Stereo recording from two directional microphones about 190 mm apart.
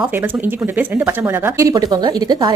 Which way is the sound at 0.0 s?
10° right (ahead or behind).